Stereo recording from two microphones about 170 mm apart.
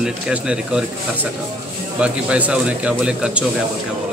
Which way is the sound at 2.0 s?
5° right (ahead or behind).